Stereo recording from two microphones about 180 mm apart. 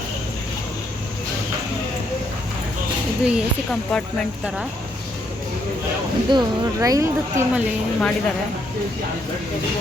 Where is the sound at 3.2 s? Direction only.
5° right (ahead or behind).